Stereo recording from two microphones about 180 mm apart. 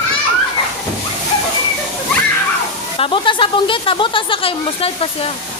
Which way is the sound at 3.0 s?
30° left (ahead or behind).